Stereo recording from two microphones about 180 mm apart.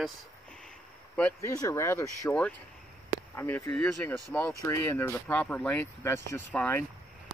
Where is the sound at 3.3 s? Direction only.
10° left (ahead or behind).